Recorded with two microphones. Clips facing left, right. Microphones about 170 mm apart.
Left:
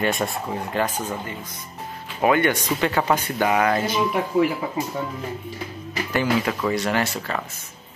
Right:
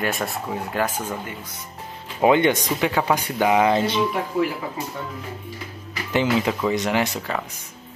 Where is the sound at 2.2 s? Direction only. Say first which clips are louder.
Right 2 dB; 20° right (ahead or behind).